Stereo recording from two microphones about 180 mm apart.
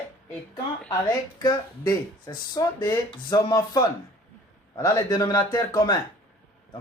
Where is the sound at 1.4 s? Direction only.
20° left (ahead or behind).